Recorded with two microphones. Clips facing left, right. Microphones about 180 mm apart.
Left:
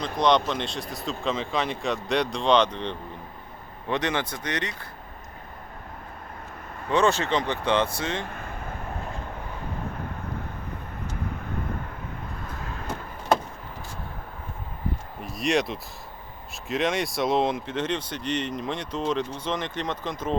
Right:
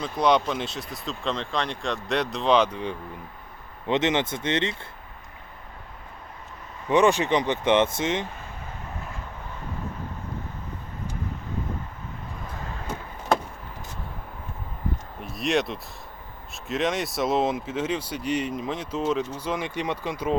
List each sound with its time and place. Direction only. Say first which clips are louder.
0.0 s speech: even; 5° right (ahead or behind)
3.8 s speech: right 4 dB; 20° right (ahead or behind)
6.8 s speech: right 3 dB; 15° right (ahead or behind)
8.3 s vehicle: left 3 dB; 55° left (ahead or behind)
15.2 s a sound: even; centre (ahead or behind)
16.6 s speech: even; centre (ahead or behind)